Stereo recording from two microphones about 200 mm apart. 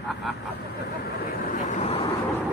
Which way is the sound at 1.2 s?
45° left (ahead or behind).